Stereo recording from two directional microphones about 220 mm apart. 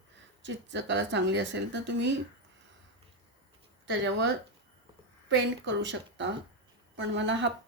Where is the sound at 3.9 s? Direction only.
55° right (ahead or behind).